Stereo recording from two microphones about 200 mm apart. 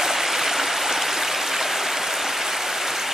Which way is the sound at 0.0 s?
Centre (ahead or behind).